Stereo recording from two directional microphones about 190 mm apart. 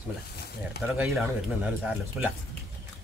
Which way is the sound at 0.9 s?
5° right (ahead or behind).